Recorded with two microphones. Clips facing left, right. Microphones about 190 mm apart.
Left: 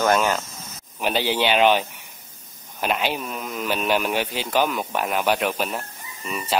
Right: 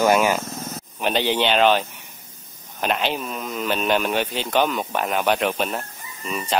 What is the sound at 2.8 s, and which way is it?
Speech, 5° left (ahead or behind).